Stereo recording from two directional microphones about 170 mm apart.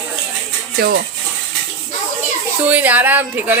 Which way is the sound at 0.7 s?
60° right (ahead or behind).